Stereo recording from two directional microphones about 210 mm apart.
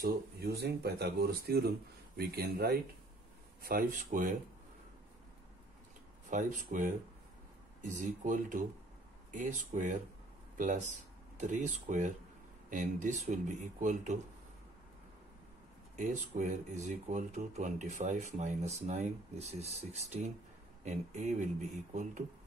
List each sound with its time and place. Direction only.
0.0 s speech: 45° right (ahead or behind)
6.3 s speech: 35° right (ahead or behind)
16.0 s speech: 35° right (ahead or behind)